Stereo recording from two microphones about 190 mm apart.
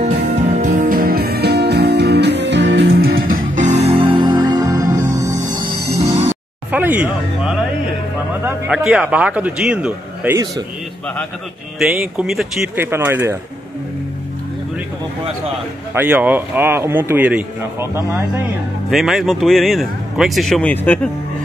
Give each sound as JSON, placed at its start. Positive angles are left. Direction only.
{"t": 0.4, "sound": "music", "side_deg": -40}
{"t": 3.5, "sound": "music", "side_deg": -40}
{"t": 5.9, "sound": "music", "side_deg": -35}
{"t": 6.7, "sound": "a man's voice", "side_deg": -10}
{"t": 11.8, "sound": "a man's voice", "side_deg": 0}
{"t": 15.9, "sound": "a man's voice", "side_deg": -10}
{"t": 18.9, "sound": "speech", "side_deg": 0}